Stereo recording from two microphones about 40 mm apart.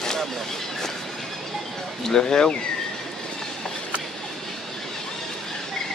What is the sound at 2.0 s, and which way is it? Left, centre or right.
Speech, centre.